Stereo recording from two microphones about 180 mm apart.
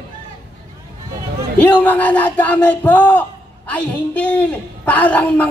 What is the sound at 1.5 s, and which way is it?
A woman's voice, 10° left (ahead or behind).